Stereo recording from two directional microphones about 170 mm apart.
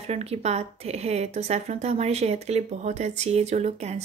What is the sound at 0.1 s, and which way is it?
A woman's voice, 40° right (ahead or behind).